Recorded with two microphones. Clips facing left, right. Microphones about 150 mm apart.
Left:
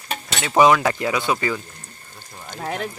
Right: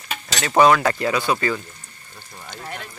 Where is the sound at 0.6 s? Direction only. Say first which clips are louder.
Even; 15° left (ahead or behind).